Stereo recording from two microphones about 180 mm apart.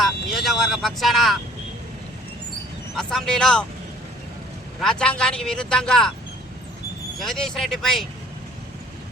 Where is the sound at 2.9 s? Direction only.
5° left (ahead or behind).